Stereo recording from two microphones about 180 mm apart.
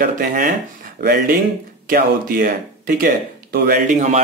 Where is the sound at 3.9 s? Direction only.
40° right (ahead or behind).